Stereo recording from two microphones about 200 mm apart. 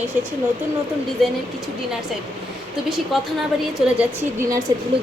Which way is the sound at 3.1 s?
Centre (ahead or behind).